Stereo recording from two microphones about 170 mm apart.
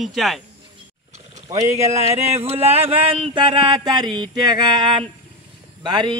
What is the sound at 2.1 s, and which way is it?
Speech, 35° right (ahead or behind).